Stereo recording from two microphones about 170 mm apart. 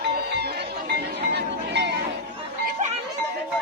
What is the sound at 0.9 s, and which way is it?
Music, 80° right.